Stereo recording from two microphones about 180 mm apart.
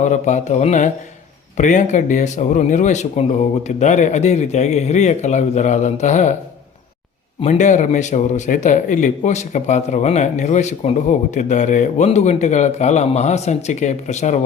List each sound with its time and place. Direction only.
0.1 s a man's voice: 40° left (ahead or behind)
7.4 s a man's voice: 40° left (ahead or behind)